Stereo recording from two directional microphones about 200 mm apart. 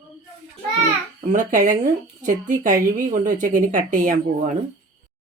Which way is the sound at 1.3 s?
40° right (ahead or behind).